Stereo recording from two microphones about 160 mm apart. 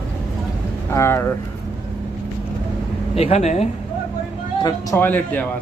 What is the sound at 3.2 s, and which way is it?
Speech, 40° left (ahead or behind).